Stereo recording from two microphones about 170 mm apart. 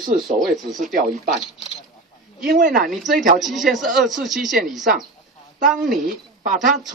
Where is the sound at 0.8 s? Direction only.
50° right (ahead or behind).